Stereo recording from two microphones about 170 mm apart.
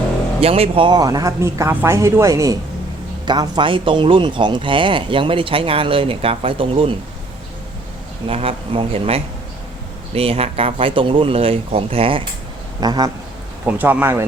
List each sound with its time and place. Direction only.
0.3 s speech: 35° right (ahead or behind)
8.3 s speech: 35° right (ahead or behind)
12.8 s speech: 25° right (ahead or behind)
13.7 s speech: 10° right (ahead or behind)